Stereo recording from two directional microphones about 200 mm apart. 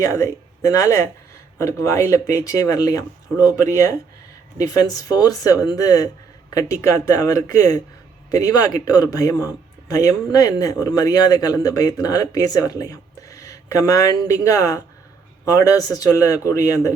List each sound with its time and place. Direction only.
0.0 s speech: 15° left (ahead or behind)